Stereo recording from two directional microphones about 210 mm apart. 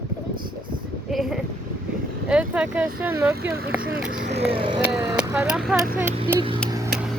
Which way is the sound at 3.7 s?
45° right (ahead or behind).